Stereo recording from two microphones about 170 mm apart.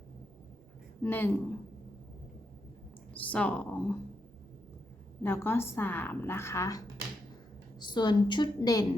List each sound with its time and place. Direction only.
1.0 s a woman's voice: 10° left (ahead or behind)
3.1 s a woman's voice: 10° left (ahead or behind)
5.2 s a woman's voice: 15° left (ahead or behind)